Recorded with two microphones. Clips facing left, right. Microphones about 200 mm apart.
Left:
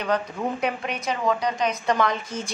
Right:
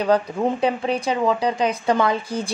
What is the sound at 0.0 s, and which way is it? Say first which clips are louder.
A woman's voice: right 6 dB; 35° right (ahead or behind).